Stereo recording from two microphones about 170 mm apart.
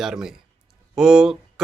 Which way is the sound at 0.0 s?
5° right (ahead or behind).